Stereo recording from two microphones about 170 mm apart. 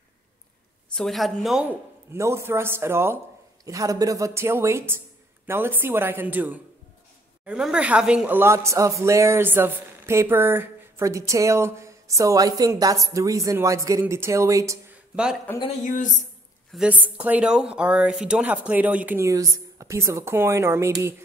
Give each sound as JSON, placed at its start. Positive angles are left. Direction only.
{"t": 0.8, "sound": "speech", "side_deg": 0}
{"t": 15.5, "sound": "speech", "side_deg": 10}
{"t": 15.8, "sound": "a woman's voice", "side_deg": 50}
{"t": 16.7, "sound": "speech", "side_deg": -10}